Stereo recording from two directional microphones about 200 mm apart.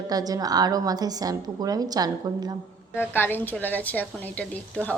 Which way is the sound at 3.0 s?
10° left (ahead or behind).